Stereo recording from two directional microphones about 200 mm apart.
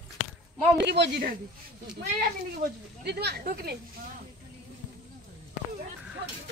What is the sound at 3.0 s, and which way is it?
Speech, 55° right (ahead or behind).